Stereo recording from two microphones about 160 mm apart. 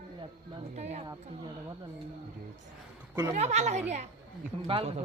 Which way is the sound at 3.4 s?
45° right (ahead or behind).